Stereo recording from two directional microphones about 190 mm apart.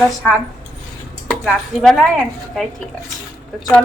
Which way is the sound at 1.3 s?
Centre (ahead or behind).